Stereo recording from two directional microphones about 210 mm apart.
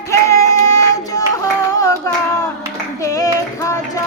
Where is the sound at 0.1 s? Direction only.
15° left (ahead or behind).